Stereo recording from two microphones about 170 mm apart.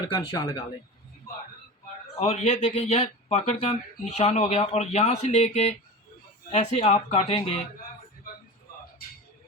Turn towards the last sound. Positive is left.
turn(degrees=35)  # may be behind; listen again after turning